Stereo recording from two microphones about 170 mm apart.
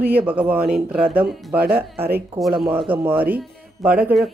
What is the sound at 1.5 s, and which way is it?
Speech, 60° right (ahead or behind).